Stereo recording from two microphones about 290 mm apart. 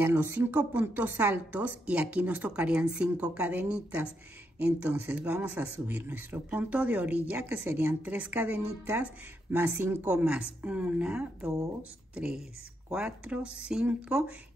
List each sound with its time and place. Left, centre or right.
0.0 s speech: centre